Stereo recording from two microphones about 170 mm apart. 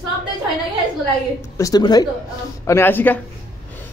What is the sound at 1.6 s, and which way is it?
A man's voice, 25° left (ahead or behind).